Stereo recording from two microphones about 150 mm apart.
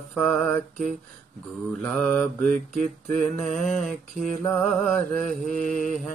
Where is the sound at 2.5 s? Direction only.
55° right (ahead or behind).